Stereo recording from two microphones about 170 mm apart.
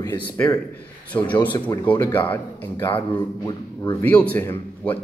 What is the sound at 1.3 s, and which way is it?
Speech, 25° left (ahead or behind).